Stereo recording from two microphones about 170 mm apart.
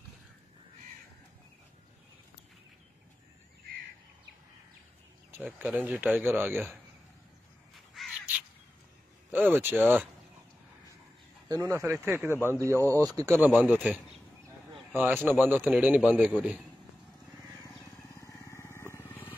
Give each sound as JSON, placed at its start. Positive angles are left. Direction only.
{"t": 5.4, "sound": "speech", "side_deg": -10}
{"t": 7.9, "sound": "crow", "side_deg": 0}
{"t": 9.3, "sound": "speech", "side_deg": -10}
{"t": 11.4, "sound": "speech", "side_deg": -20}
{"t": 14.7, "sound": "a sound", "side_deg": 0}
{"t": 15.2, "sound": "speech", "side_deg": -10}
{"t": 16.3, "sound": "a man's voice", "side_deg": 5}
{"t": 18.1, "sound": "vehicle", "side_deg": 15}